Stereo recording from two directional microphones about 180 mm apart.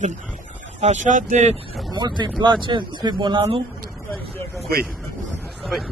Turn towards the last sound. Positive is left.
turn(degrees=0)  # may be behind; listen again after turning